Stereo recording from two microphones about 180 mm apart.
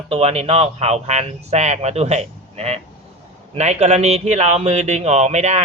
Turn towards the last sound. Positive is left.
turn(degrees=-40)  # may be behind; listen again after turning